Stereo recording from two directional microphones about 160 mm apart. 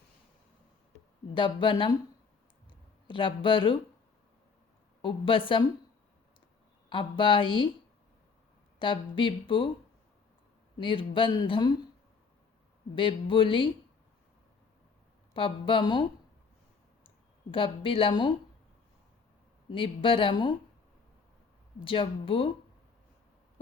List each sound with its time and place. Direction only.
1.3 s speech: 30° left (ahead or behind)
2.6 s a sound: 30° left (ahead or behind)
5.0 s speech: 35° left (ahead or behind)
6.9 s speech: 35° left (ahead or behind)
8.8 s speech: 30° left (ahead or behind)
10.8 s speech: 30° left (ahead or behind)
13.0 s speech: 30° left (ahead or behind)
15.3 s speech: 35° left (ahead or behind)
17.5 s speech: 35° left (ahead or behind)
19.7 s speech: 35° left (ahead or behind)
21.8 s speech: 35° left (ahead or behind)